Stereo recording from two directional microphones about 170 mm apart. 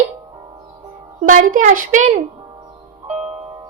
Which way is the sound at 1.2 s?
50° right (ahead or behind).